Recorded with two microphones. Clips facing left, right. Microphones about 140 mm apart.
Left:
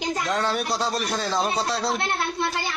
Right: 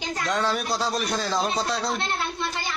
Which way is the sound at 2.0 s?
65° left (ahead or behind).